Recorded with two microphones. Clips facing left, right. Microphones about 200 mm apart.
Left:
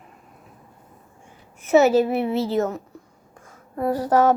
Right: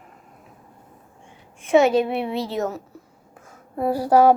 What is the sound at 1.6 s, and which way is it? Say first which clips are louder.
A child's voice: left 1 dB; 5° left (ahead or behind).